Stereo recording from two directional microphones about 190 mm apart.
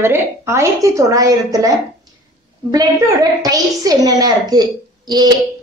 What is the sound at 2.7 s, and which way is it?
A woman's voice, 20° right (ahead or behind).